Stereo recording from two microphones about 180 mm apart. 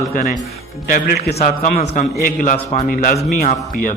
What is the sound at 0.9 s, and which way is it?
Speech, 60° left (ahead or behind).